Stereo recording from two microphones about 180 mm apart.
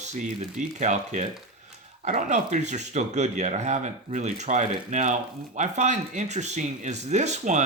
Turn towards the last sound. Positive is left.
turn(degrees=-40)  # may be behind; listen again after turning